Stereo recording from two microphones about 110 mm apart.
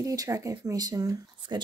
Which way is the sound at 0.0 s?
30° right (ahead or behind).